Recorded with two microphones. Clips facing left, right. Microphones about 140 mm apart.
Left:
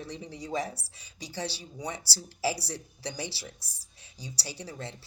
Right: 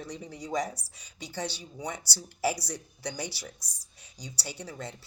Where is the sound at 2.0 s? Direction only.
30° left (ahead or behind).